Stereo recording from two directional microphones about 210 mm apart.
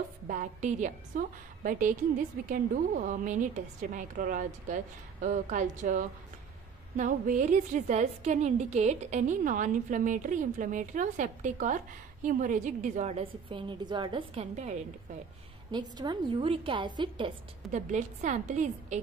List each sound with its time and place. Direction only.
0.3 s a woman's voice: 35° right (ahead or behind)
15.7 s a woman's voice: 20° right (ahead or behind)
17.7 s a woman's voice: 35° right (ahead or behind)